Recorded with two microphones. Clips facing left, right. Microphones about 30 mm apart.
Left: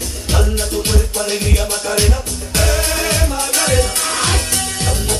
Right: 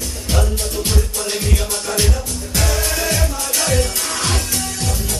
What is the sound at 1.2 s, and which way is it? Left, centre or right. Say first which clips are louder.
Music: left 3 dB; left.